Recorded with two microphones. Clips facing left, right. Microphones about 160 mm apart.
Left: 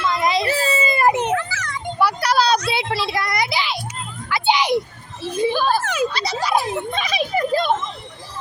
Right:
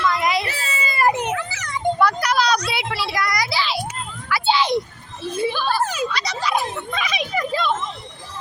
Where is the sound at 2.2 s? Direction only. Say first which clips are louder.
Left 2 dB; 30° left (ahead or behind).